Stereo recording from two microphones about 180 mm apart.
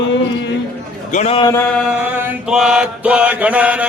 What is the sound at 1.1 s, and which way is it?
Speech, 35° left (ahead or behind).